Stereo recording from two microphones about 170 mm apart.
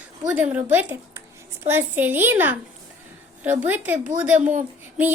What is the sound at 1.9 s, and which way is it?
A woman's voice, 10° right (ahead or behind).